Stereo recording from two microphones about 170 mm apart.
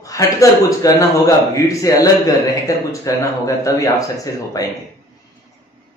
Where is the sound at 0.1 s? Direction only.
20° left (ahead or behind).